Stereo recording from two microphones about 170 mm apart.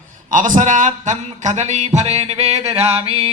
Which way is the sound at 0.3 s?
50° right (ahead or behind).